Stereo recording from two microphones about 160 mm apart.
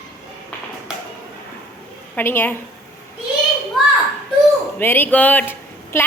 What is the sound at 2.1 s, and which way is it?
Speech, 15° left (ahead or behind).